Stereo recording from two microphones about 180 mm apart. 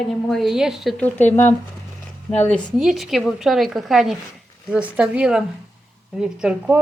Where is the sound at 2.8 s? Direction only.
Centre (ahead or behind).